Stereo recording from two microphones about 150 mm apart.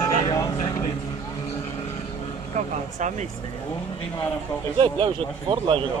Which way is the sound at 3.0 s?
55° right (ahead or behind).